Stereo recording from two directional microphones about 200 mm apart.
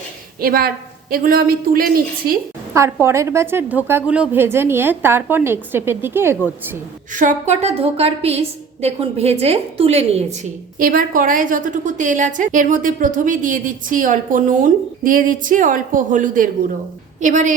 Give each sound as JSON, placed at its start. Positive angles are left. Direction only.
{"t": 0.3, "sound": "a woman's voice", "side_deg": -45}
{"t": 2.7, "sound": "a woman's voice", "side_deg": -15}
{"t": 7.1, "sound": "a woman's voice", "side_deg": -40}